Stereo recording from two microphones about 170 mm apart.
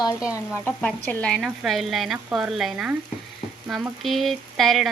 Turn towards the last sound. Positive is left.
turn(degrees=0)  # may be behind; listen again after turning